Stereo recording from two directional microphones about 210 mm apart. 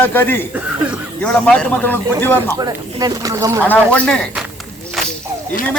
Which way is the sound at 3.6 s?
5° left (ahead or behind).